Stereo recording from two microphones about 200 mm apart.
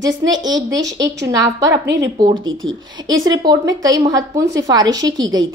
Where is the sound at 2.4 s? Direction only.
75° right (ahead or behind).